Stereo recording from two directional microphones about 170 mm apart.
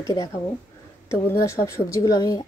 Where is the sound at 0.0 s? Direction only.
20° left (ahead or behind).